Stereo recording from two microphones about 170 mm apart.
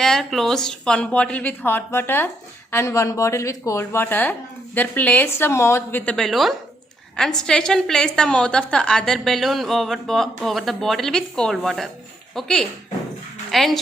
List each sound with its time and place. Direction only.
0.0 s a woman's voice: centre (ahead or behind)